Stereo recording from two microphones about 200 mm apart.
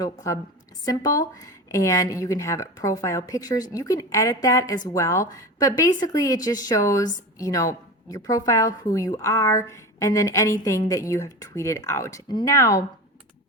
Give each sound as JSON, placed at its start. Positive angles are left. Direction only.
{"t": 0.0, "sound": "speech", "side_deg": 20}